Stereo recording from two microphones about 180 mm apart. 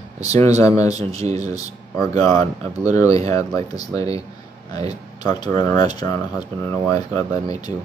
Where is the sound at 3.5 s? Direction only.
20° left (ahead or behind).